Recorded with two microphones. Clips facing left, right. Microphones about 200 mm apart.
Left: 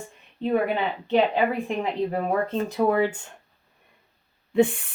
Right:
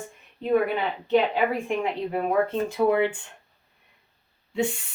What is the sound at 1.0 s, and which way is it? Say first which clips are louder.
A woman's voice: even; 35° left (ahead or behind).